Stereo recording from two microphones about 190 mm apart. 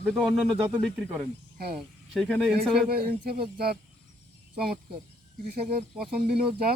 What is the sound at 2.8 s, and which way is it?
Speech, 55° right (ahead or behind).